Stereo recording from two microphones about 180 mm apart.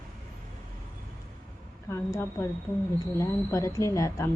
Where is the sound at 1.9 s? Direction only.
15° left (ahead or behind).